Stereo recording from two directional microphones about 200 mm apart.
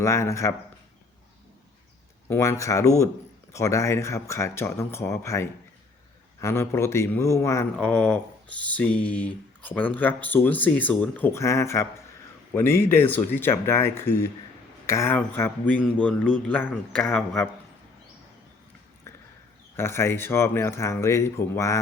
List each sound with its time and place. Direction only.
0.0 s speech: 15° left (ahead or behind)
2.2 s speech: 10° left (ahead or behind)
19.1 s a sound: 15° left (ahead or behind)
19.7 s speech: 10° left (ahead or behind)